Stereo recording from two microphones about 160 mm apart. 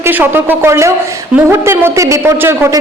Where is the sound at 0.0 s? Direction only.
15° right (ahead or behind).